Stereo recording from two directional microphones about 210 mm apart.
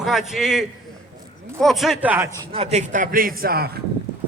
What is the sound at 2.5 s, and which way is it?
A man's voice, 30° right (ahead or behind).